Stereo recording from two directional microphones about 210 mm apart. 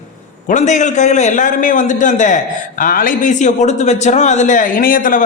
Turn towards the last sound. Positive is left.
turn(degrees=40)  # may be behind; listen again after turning